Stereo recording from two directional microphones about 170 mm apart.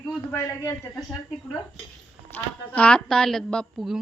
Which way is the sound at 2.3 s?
10° left (ahead or behind).